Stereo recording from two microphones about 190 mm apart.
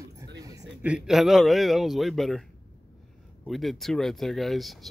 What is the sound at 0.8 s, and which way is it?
Speech, 5° right (ahead or behind).